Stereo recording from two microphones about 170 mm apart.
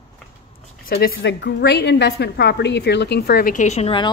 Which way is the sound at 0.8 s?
60° left (ahead or behind).